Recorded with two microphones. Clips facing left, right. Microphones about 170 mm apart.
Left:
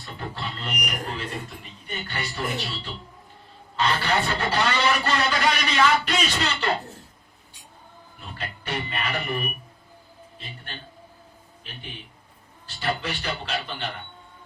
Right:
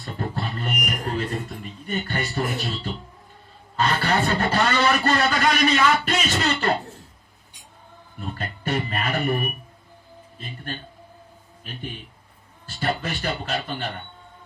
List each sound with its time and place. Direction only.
0.0 s music: 45° right (ahead or behind)
3.8 s speech: 45° right (ahead or behind)
8.2 s speech: 50° right (ahead or behind)
11.6 s a man's voice: 45° right (ahead or behind)